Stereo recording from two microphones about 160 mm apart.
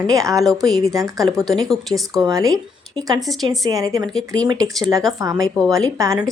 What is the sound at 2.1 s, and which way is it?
Speech, 20° right (ahead or behind).